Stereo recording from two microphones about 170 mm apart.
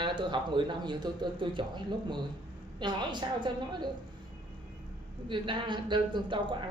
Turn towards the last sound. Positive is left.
turn(degrees=-30)  # may be behind; listen again after turning